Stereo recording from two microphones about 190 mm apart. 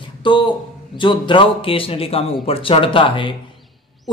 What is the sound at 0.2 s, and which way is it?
A man's voice, 25° left (ahead or behind).